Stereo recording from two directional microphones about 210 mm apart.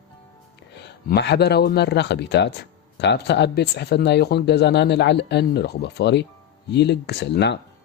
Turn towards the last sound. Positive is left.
turn(degrees=55)  # may be behind; listen again after turning